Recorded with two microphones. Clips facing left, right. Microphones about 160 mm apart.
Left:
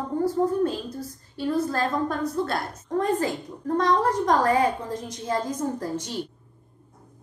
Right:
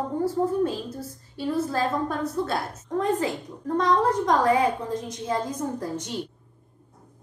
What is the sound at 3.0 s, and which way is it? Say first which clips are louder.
A woman's voice: even; 20° right (ahead or behind).